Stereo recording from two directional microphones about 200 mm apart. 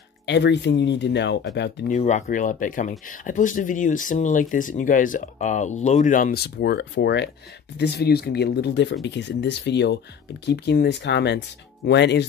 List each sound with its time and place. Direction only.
0.3 s speech: 60° left (ahead or behind)
1.9 s speech: 35° left (ahead or behind); by 12.3 s 60° left (ahead or behind)